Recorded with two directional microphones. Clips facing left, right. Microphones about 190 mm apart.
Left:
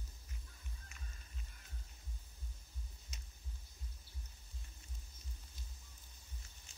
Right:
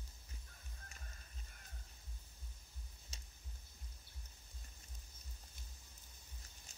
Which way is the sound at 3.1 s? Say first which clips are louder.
Left 2 dB; 30° right (ahead or behind).